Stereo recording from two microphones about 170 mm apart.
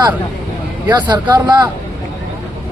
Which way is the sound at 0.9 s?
25° right (ahead or behind).